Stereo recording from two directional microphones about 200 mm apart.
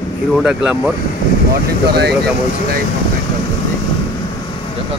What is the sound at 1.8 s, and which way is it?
Speech, 55° right (ahead or behind).